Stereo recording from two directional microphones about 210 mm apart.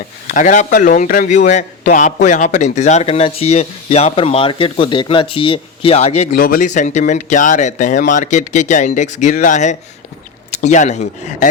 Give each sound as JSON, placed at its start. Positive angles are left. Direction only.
{"t": 0.3, "sound": "a man's voice", "side_deg": 40}
{"t": 6.3, "sound": "a man's voice", "side_deg": 45}